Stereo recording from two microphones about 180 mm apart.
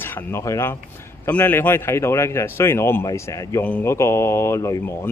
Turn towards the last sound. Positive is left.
turn(degrees=15)  # may be behind; listen again after turning